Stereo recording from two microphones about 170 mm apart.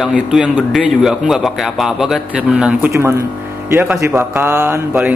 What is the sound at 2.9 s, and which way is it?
Speech, 15° right (ahead or behind).